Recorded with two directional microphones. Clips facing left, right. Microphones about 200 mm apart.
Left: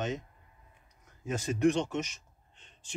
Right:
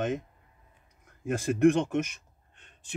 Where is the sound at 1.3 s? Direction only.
55° right (ahead or behind).